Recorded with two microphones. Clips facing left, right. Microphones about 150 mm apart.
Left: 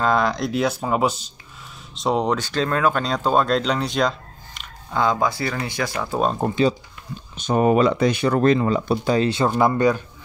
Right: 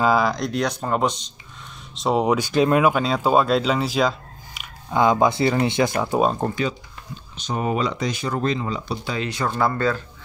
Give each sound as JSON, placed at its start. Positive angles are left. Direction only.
{"t": 0.0, "sound": "speech", "side_deg": -5}
{"t": 4.6, "sound": "speech", "side_deg": -15}
{"t": 7.3, "sound": "speech", "side_deg": 50}
{"t": 9.3, "sound": "speech", "side_deg": 25}